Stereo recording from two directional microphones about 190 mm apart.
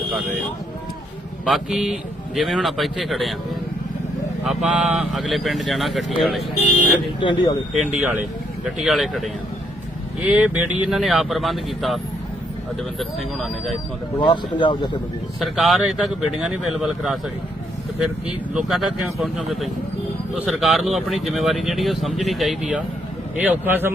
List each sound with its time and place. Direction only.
1.5 s speech: centre (ahead or behind)
4.4 s speech: 5° right (ahead or behind)
7.2 s speech: 25° left (ahead or behind)
7.8 s speech: 5° right (ahead or behind)
13.0 s speech: centre (ahead or behind)
14.2 s speech: 25° left (ahead or behind)
15.4 s speech: centre (ahead or behind)
18.3 s a man's voice: centre (ahead or behind)